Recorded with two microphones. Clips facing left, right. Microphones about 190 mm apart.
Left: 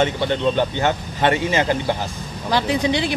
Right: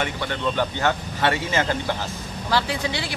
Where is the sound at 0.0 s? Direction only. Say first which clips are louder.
Left 7 dB; 25° left (ahead or behind).